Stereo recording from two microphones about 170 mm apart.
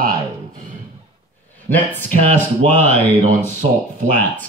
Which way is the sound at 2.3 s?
10° left (ahead or behind).